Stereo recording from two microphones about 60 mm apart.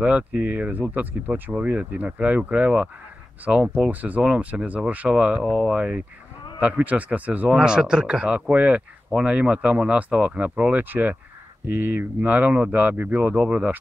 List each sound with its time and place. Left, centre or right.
0.0 s speech: right
3.5 s speech: centre
3.8 s speech: right
7.4 s speech: centre
10.8 s speech: right